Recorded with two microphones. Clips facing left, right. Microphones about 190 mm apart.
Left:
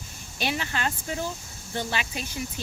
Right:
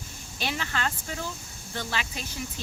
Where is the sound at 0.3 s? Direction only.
15° left (ahead or behind).